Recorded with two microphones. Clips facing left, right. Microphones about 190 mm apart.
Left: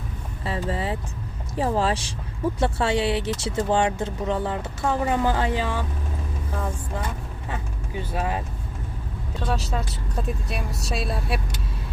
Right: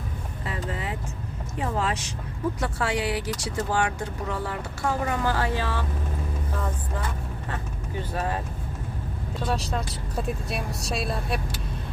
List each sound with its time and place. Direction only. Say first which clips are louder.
0.4 s vehicle: left 5 dB; 30° left (ahead or behind)
1.5 s speech: left 5 dB; 30° left (ahead or behind); by 5.8 s 15° left (ahead or behind)
8.1 s speech: left 2 dB; 10° left (ahead or behind)
9.5 s a woman's voice: left 1 dB; centre (ahead or behind)